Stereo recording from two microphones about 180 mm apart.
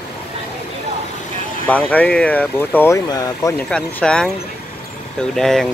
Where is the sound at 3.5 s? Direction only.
5° left (ahead or behind).